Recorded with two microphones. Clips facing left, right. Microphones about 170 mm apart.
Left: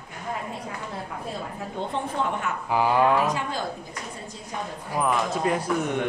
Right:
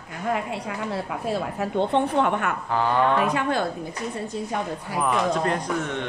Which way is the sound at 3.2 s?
60° right (ahead or behind).